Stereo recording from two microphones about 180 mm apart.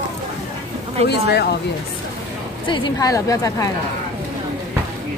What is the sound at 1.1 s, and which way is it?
Speech, 65° left (ahead or behind).